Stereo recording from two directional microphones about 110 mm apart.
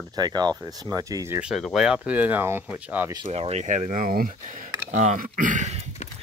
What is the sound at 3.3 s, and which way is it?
Speech, 75° right (ahead or behind).